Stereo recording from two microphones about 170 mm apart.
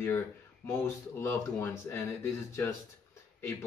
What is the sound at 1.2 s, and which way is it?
Speech, 15° left (ahead or behind).